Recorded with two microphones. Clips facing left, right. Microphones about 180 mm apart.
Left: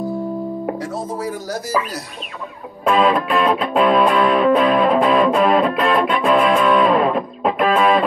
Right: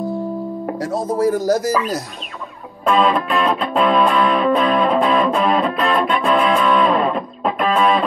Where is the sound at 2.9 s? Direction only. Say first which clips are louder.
Even; 5° left (ahead or behind).